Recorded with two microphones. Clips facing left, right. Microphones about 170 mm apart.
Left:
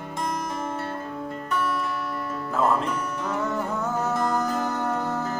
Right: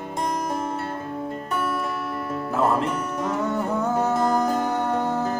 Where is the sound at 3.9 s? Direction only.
35° right (ahead or behind).